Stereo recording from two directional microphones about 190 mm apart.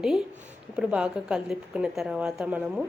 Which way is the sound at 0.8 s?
5° right (ahead or behind).